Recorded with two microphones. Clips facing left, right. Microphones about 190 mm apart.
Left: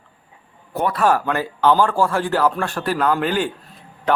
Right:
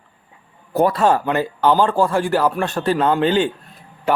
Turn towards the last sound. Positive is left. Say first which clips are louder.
# even
turn(degrees=-10)  # may be behind; listen again after turning